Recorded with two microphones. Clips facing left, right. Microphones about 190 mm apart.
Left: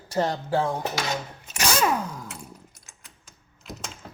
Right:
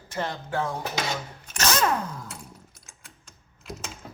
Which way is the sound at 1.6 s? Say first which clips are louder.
Left 1 dB; 10° left (ahead or behind).